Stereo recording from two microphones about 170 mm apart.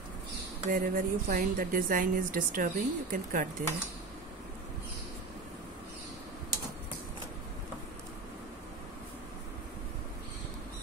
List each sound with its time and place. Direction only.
0.7 s a woman's voice: 55° right (ahead or behind)